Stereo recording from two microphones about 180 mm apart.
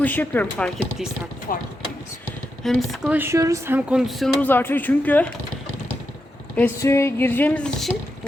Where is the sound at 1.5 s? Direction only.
50° left (ahead or behind).